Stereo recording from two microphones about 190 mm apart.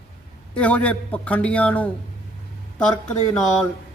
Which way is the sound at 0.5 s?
5° left (ahead or behind).